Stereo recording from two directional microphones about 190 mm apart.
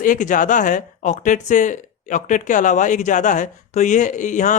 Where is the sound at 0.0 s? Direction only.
45° left (ahead or behind).